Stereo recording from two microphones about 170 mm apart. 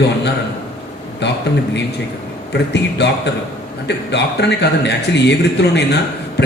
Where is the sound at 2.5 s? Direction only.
90° left.